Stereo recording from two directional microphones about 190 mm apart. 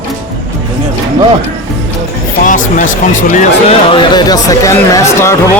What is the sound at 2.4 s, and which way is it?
Speech, 45° left (ahead or behind).